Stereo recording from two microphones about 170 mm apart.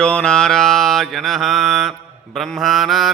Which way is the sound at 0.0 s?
5° left (ahead or behind).